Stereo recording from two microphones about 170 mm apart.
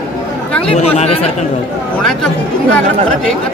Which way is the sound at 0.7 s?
40° left (ahead or behind).